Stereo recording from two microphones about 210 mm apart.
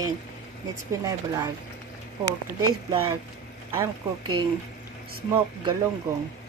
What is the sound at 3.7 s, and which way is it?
Speech, 15° right (ahead or behind).